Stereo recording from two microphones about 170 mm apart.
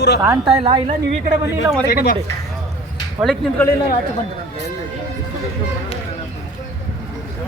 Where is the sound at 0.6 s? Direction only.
35° right (ahead or behind).